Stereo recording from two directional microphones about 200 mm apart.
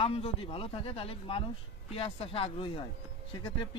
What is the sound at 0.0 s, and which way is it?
Speech, 30° left (ahead or behind).